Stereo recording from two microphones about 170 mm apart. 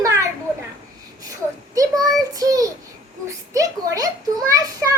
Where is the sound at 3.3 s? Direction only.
20° right (ahead or behind).